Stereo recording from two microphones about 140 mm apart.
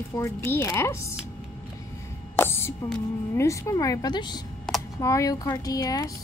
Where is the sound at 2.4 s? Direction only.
15° left (ahead or behind).